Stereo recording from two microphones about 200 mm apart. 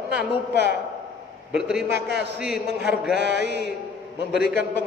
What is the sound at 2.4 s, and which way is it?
Speech, 5° right (ahead or behind).